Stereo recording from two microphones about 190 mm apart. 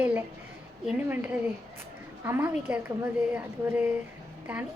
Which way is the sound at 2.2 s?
10° right (ahead or behind).